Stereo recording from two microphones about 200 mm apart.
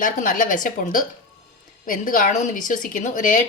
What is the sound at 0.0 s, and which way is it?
Speech, 40° left (ahead or behind).